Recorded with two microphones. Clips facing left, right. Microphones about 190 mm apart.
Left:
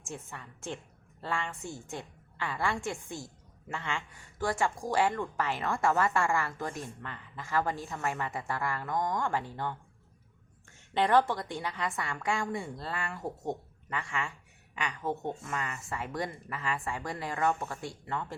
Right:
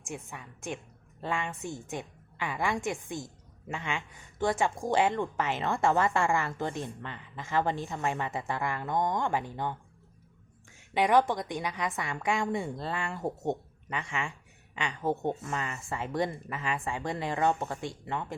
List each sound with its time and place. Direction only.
0.0 s a woman's voice: 15° right (ahead or behind)